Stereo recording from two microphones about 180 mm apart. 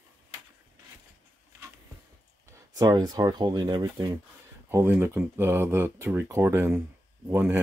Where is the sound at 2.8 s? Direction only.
20° right (ahead or behind).